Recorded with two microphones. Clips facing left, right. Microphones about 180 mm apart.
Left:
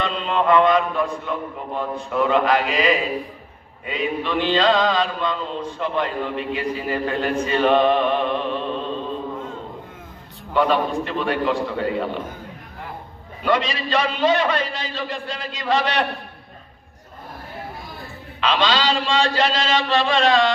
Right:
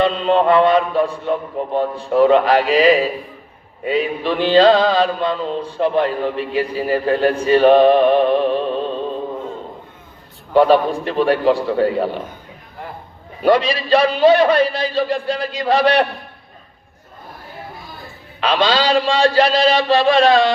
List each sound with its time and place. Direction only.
0.0 s a man's voice: 35° right (ahead or behind)
10.5 s a man's voice: 35° right (ahead or behind)
13.4 s a man's voice: 35° right (ahead or behind)
18.3 s a man's voice: 40° right (ahead or behind)